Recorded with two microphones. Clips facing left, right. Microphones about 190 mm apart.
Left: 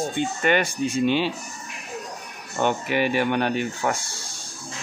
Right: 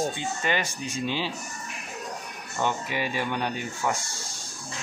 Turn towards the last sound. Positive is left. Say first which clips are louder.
# left 5 dB
turn(degrees=65)  # may be behind; listen again after turning